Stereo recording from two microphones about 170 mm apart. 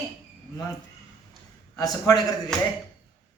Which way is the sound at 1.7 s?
20° left (ahead or behind).